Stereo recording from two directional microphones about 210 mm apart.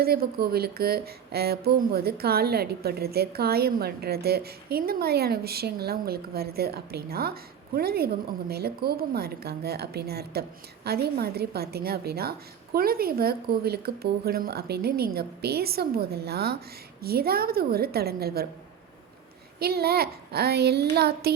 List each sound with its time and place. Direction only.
0.0 s speech: 45° right (ahead or behind)
19.5 s speech: 50° right (ahead or behind)